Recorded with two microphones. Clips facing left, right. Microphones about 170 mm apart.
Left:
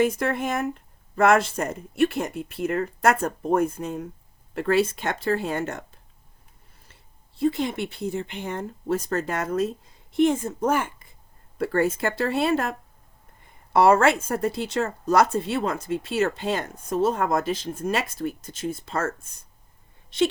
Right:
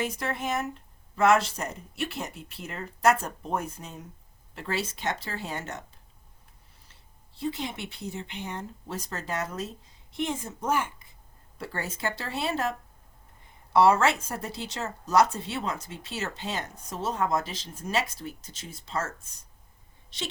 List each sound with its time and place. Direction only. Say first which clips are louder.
0.0 s speech: left 8 dB; 55° left (ahead or behind)
7.3 s speech: left 9 dB; 50° left (ahead or behind)
13.7 s speech: left 4 dB; 50° left (ahead or behind)